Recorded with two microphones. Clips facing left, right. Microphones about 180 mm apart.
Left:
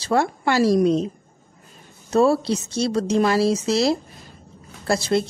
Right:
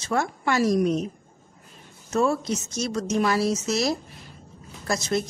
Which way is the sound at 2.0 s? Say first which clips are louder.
Left 6 dB; 35° left (ahead or behind).